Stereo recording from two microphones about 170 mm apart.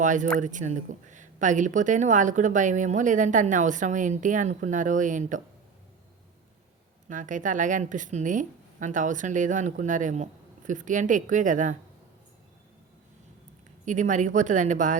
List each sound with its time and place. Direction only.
0.0 s speech: 45° right (ahead or behind)
7.1 s speech: 50° right (ahead or behind)
13.8 s speech: 45° right (ahead or behind)